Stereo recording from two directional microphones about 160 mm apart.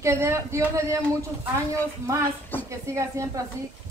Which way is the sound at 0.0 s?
15° right (ahead or behind).